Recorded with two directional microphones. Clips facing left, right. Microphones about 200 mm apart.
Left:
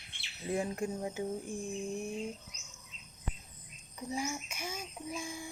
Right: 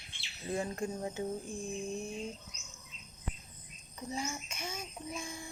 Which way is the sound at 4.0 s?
10° left (ahead or behind).